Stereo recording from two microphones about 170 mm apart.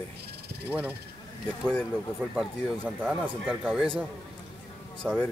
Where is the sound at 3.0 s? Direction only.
5° right (ahead or behind).